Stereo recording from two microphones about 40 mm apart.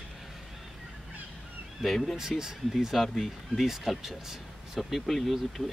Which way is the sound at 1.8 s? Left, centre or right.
Centre.